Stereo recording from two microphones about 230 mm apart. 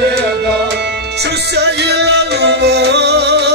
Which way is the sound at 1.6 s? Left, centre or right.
Right.